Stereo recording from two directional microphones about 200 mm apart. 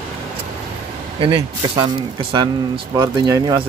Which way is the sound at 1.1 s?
25° right (ahead or behind).